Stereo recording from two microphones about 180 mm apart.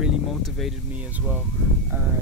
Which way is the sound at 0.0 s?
Centre (ahead or behind).